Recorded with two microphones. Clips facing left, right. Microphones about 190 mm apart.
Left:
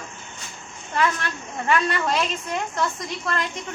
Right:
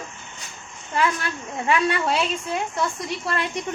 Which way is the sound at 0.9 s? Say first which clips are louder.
Even; 10° right (ahead or behind).